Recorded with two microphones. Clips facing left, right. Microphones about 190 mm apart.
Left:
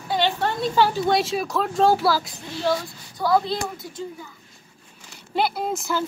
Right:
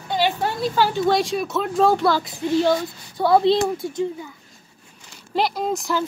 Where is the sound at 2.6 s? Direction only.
25° right (ahead or behind).